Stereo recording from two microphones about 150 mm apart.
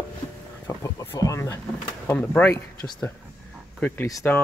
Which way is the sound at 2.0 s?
10° left (ahead or behind).